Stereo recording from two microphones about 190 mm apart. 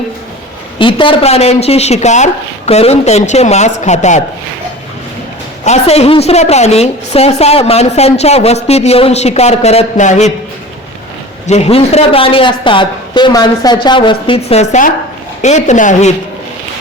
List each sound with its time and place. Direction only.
0.8 s a woman's voice: 25° left (ahead or behind)
5.6 s a woman's voice: 35° left (ahead or behind)
11.4 s a man's voice: 35° left (ahead or behind)